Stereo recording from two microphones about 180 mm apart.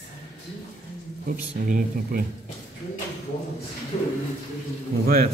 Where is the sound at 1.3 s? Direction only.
55° right (ahead or behind).